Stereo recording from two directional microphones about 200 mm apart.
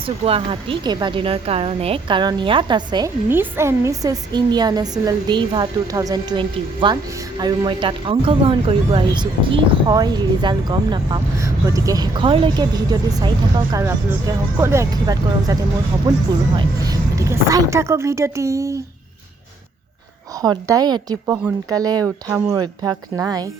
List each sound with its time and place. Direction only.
0.0 s a woman's voice: 30° right (ahead or behind)
3.2 s a woman's voice: 10° right (ahead or behind)
16.6 s speech: 20° right (ahead or behind)
20.4 s a woman's voice: 20° right (ahead or behind)